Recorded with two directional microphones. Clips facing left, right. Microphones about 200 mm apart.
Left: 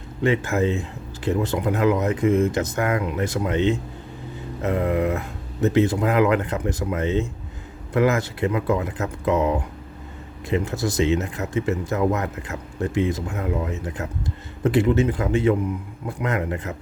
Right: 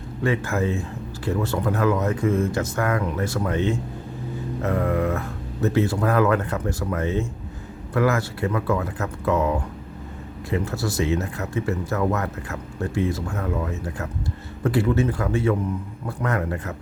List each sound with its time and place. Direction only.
0.2 s speech: 20° left (ahead or behind)